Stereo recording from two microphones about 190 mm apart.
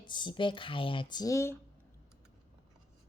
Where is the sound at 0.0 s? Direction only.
25° left (ahead or behind).